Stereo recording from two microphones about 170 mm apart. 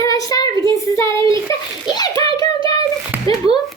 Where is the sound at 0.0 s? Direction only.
20° left (ahead or behind).